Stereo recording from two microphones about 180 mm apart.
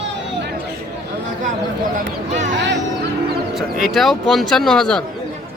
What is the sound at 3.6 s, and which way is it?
Speech, centre (ahead or behind).